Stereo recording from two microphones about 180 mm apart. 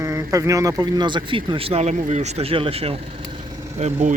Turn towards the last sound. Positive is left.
turn(degrees=-40)  # may be behind; listen again after turning